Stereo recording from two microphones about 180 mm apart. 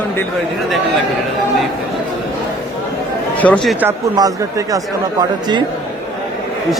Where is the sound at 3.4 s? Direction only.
5° left (ahead or behind).